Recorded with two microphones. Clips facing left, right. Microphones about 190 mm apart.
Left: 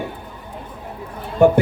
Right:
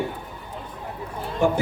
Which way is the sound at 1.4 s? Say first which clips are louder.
Left 8 dB; 60° left (ahead or behind).